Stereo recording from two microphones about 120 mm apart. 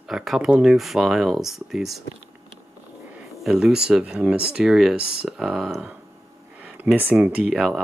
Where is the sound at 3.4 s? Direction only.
5° right (ahead or behind).